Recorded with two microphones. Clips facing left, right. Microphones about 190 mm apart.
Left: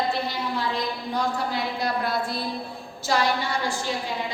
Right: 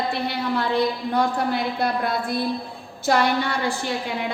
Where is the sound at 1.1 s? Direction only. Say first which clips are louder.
Right 3 dB; 55° right (ahead or behind).